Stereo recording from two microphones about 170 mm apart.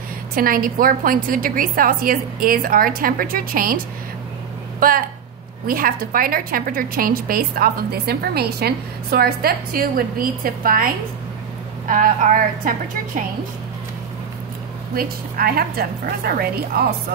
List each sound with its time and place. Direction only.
0.4 s a woman's voice: 55° right (ahead or behind)
11.9 s a woman's voice: 50° right (ahead or behind)
15.0 s a woman's voice: 60° right (ahead or behind)